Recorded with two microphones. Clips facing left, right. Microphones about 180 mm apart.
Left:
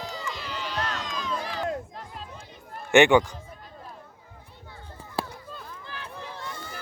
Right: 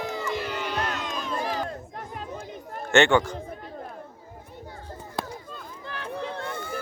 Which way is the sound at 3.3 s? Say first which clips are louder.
Right 8 dB; 55° right (ahead or behind).